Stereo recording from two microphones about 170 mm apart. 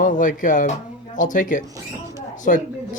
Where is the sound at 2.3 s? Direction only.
50° left (ahead or behind).